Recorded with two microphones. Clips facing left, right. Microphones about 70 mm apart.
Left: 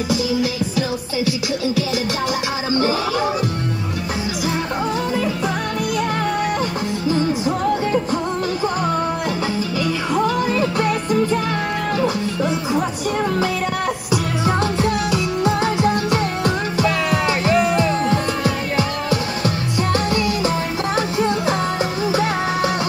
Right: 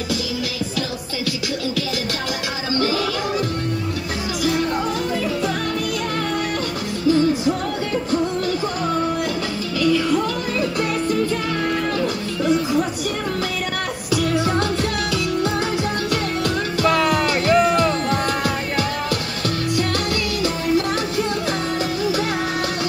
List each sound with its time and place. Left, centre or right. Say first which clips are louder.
10.1 s music: left 3 dB; left
14.1 s music: right 2 dB; centre